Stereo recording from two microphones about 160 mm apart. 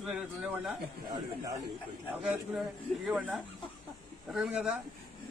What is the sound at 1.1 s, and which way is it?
Speech, 20° right (ahead or behind).